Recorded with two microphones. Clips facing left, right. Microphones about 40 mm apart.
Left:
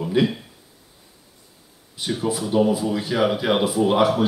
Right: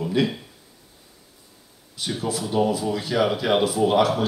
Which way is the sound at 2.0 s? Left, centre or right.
Centre.